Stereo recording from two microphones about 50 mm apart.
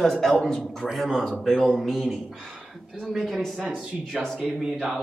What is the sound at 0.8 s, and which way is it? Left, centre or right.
A woman's voice, centre.